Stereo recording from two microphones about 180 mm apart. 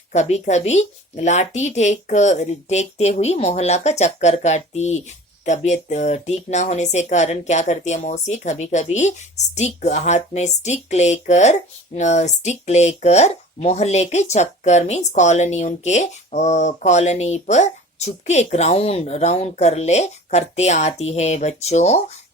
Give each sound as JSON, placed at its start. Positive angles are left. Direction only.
{"t": 0.1, "sound": "a woman's voice", "side_deg": 40}